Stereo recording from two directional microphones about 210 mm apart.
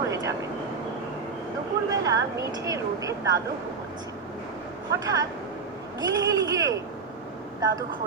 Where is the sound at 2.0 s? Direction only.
15° right (ahead or behind).